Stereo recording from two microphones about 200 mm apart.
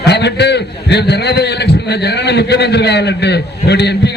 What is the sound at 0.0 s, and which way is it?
A man's voice, 55° left (ahead or behind).